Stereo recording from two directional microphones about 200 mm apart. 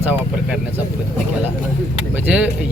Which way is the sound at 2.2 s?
5° right (ahead or behind).